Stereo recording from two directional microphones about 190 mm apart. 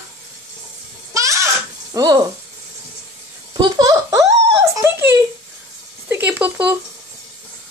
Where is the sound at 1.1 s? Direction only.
15° right (ahead or behind).